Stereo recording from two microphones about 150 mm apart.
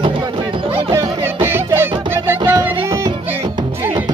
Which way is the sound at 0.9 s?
15° right (ahead or behind).